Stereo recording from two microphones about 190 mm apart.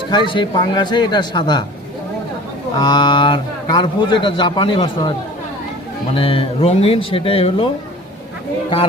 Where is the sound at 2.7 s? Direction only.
25° left (ahead or behind).